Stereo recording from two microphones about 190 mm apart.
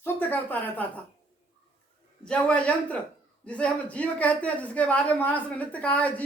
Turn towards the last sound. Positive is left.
turn(degrees=5)  # may be behind; listen again after turning